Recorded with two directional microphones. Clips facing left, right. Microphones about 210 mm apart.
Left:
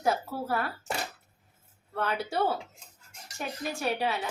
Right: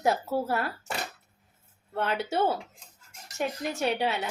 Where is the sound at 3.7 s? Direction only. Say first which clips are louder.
Right 1 dB; 20° right (ahead or behind).